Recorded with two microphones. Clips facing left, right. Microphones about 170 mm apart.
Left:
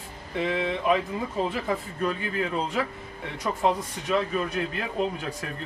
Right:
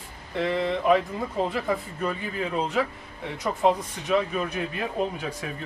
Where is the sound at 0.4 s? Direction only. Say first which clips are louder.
Right 2 dB; centre (ahead or behind).